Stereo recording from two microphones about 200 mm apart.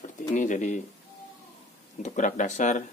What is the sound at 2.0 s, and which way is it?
Speech, 40° left (ahead or behind).